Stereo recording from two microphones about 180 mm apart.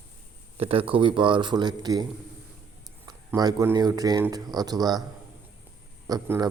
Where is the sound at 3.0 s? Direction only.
20° right (ahead or behind).